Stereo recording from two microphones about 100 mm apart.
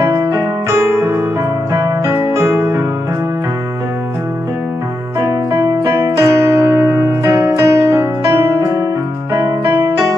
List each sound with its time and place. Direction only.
0.1 s piano: 35° right (ahead or behind)
1.7 s music: 30° right (ahead or behind)
5.2 s piano: 30° right (ahead or behind)